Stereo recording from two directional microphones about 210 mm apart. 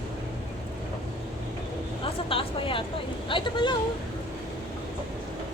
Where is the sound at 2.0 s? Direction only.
25° left (ahead or behind).